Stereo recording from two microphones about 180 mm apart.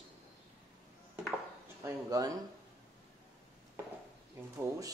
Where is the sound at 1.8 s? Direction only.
20° right (ahead or behind).